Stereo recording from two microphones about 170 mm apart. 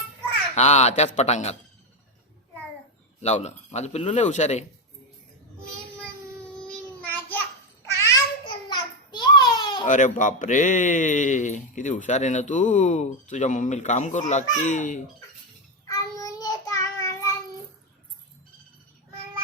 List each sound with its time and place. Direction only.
0.5 s speech: 40° left (ahead or behind)
3.2 s speech: 40° left (ahead or behind)
6.6 s child singing: 5° left (ahead or behind)
7.9 s a sound: 20° left (ahead or behind)
9.8 s speech: 50° left (ahead or behind)
15.9 s child singing: 20° left (ahead or behind)